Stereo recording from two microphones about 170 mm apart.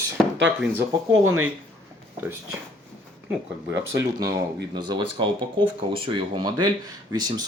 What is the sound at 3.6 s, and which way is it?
Speech, 20° right (ahead or behind).